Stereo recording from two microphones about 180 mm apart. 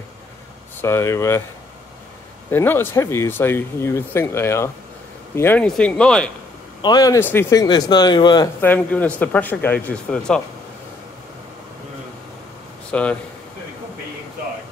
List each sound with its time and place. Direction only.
0.7 s speech: 15° left (ahead or behind)
2.5 s speech: 10° left (ahead or behind)
6.8 s speech: 20° left (ahead or behind)
8.5 s speech: 10° left (ahead or behind)
12.9 s speech: 5° left (ahead or behind)